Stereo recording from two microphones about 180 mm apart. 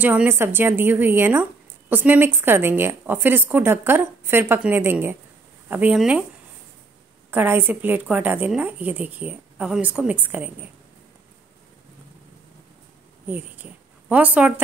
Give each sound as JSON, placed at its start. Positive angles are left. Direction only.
{"t": 0.0, "sound": "a woman's voice", "side_deg": -10}
{"t": 7.2, "sound": "a woman's voice", "side_deg": -10}
{"t": 13.3, "sound": "a woman's voice", "side_deg": -10}